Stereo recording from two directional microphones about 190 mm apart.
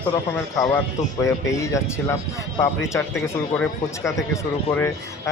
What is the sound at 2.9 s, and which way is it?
Speech, 10° left (ahead or behind).